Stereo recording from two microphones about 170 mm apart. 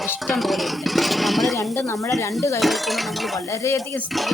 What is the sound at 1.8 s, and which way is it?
Speech, 20° left (ahead or behind).